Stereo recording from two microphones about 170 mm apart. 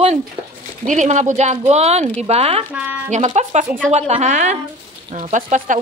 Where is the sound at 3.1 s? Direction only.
45° right (ahead or behind).